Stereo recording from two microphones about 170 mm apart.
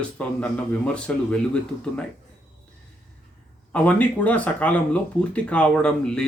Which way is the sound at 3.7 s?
10° left (ahead or behind).